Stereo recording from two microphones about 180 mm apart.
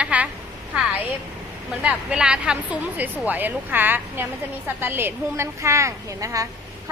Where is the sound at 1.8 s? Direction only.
5° right (ahead or behind).